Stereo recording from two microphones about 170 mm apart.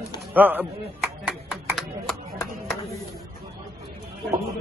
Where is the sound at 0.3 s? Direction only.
10° right (ahead or behind).